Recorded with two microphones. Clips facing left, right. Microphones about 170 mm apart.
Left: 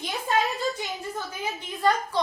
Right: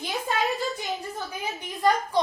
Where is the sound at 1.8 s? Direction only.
15° right (ahead or behind).